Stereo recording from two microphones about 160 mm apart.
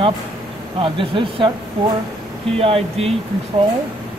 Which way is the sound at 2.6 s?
40° right (ahead or behind).